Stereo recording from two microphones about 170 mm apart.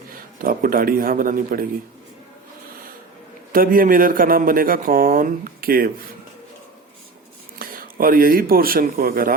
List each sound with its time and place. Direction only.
0.4 s speech: 55° right (ahead or behind)
3.5 s speech: 55° right (ahead or behind)
7.6 s speech: 55° right (ahead or behind)